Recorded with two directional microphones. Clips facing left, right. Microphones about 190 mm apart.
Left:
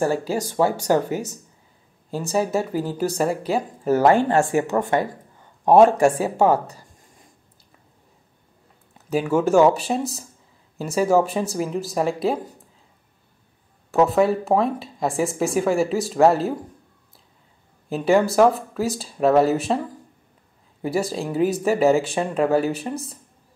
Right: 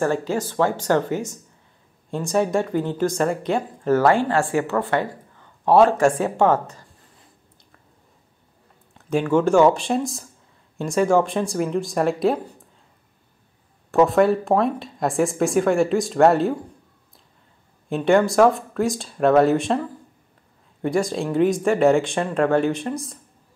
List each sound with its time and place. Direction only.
0.0 s speech: 10° left (ahead or behind)
4.0 s speech: 20° left (ahead or behind)
8.9 s speech: 5° left (ahead or behind)
13.9 s speech: centre (ahead or behind)
17.8 s speech: 5° left (ahead or behind)